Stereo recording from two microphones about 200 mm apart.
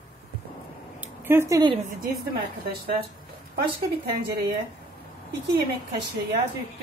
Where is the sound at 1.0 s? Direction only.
10° right (ahead or behind).